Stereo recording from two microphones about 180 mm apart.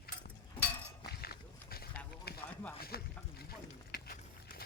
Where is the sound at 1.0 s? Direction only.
60° left (ahead or behind).